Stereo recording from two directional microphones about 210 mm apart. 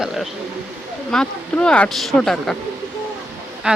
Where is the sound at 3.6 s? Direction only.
5° right (ahead or behind).